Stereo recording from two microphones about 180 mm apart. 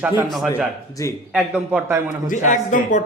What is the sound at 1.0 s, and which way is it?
Speech, 15° left (ahead or behind).